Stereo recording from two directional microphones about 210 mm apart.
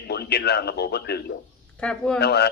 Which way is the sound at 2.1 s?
50° left (ahead or behind).